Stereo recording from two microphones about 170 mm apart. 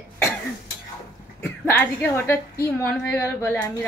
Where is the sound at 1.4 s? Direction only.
15° left (ahead or behind).